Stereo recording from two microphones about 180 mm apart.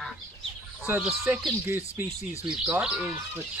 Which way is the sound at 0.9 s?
5° right (ahead or behind).